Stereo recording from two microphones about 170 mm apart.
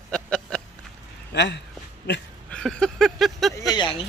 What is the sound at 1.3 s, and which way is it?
Speech, 85° left.